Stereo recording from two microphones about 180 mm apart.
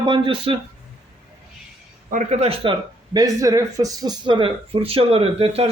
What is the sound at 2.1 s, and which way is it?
Speech, 40° right (ahead or behind).